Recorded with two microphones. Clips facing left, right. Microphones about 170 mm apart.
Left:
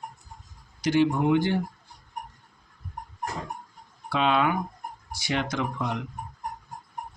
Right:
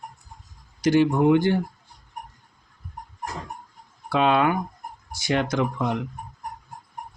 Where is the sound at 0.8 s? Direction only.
45° right (ahead or behind).